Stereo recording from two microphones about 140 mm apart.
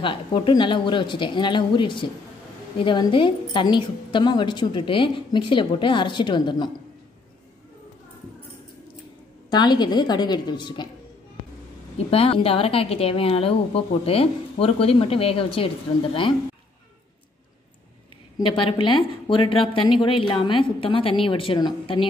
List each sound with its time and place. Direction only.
0.0 s a woman's voice: 35° left (ahead or behind)
9.5 s a woman's voice: 30° left (ahead or behind)
12.1 s a woman's voice: 45° left (ahead or behind)
18.4 s a woman's voice: 35° left (ahead or behind)